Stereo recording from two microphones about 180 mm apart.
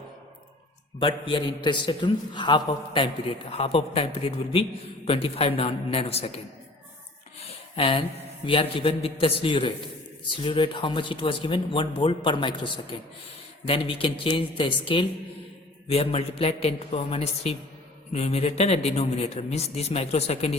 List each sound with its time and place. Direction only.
0.9 s speech: 30° left (ahead or behind)
7.8 s speech: 30° left (ahead or behind)